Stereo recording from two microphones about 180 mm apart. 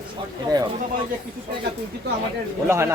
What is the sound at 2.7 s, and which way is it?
Speech, 15° right (ahead or behind).